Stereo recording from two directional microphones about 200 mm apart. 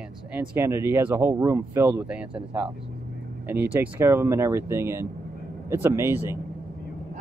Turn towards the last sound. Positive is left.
turn(degrees=-10)  # may be behind; listen again after turning